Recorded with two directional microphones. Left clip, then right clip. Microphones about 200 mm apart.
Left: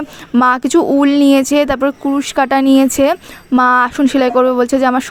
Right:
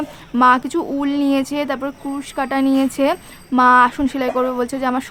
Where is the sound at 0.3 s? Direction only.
35° left (ahead or behind).